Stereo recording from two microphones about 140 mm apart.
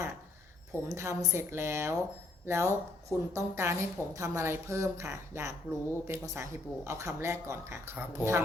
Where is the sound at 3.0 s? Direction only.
20° right (ahead or behind).